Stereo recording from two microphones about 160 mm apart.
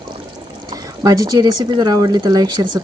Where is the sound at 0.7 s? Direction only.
25° right (ahead or behind).